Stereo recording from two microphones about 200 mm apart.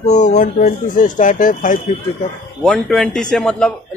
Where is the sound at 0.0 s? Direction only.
35° left (ahead or behind).